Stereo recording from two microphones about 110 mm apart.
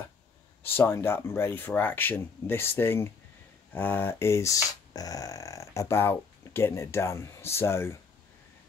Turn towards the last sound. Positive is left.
turn(degrees=25)  # may be behind; listen again after turning